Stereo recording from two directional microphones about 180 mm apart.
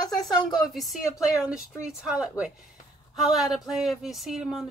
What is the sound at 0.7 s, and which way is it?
Speech, centre (ahead or behind).